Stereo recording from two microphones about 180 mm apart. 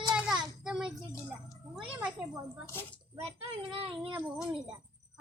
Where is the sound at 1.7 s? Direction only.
5° right (ahead or behind).